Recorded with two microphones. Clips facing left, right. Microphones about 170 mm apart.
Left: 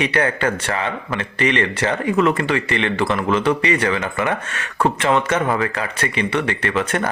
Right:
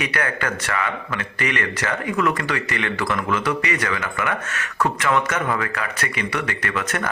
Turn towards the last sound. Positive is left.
turn(degrees=30)  # may be behind; listen again after turning